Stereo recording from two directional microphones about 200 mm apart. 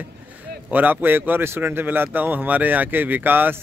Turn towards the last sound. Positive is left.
turn(degrees=-10)  # may be behind; listen again after turning